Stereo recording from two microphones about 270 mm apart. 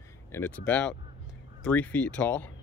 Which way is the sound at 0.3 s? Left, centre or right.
Centre.